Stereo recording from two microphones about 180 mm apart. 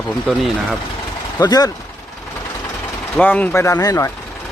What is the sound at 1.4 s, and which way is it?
Speech, 20° left (ahead or behind).